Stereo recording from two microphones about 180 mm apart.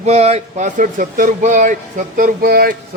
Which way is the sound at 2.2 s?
55° right (ahead or behind).